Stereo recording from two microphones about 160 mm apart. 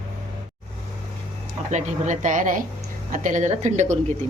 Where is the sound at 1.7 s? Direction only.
45° right (ahead or behind).